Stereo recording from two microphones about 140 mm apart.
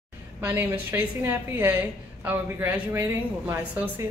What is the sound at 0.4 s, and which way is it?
A woman's voice, 15° right (ahead or behind).